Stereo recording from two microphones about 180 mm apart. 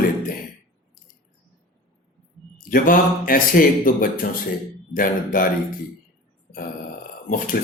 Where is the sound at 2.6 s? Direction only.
50° left (ahead or behind).